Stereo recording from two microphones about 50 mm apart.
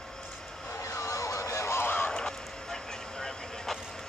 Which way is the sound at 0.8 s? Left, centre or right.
Left.